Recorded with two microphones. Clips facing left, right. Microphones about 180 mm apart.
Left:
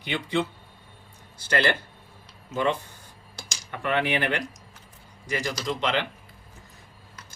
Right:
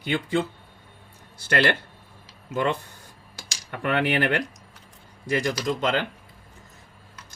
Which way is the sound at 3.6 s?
55° right (ahead or behind).